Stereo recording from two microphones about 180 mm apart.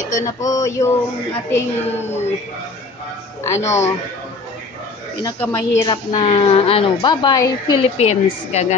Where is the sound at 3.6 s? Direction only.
15° left (ahead or behind).